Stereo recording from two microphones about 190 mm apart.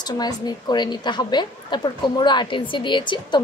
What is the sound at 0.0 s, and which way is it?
A woman's voice, 20° left (ahead or behind).